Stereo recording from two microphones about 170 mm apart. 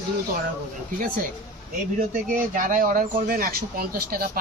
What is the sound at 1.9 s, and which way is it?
Speech, 55° right (ahead or behind).